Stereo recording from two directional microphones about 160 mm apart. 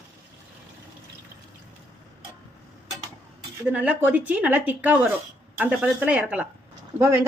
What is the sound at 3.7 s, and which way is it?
Speech, 10° right (ahead or behind).